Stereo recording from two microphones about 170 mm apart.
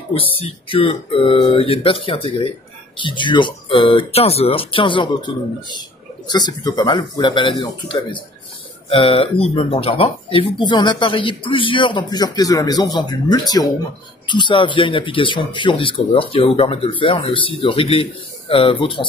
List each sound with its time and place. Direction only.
0.5 s speech: 35° left (ahead or behind)